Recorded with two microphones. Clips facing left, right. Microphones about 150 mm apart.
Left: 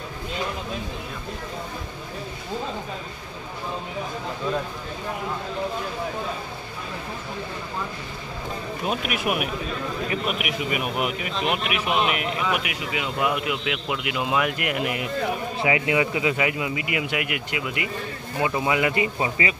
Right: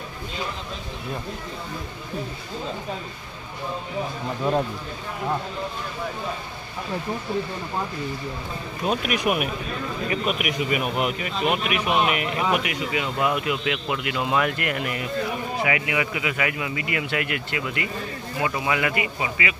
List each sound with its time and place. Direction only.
8.8 s speech: 5° left (ahead or behind)
15.6 s speech: 25° left (ahead or behind)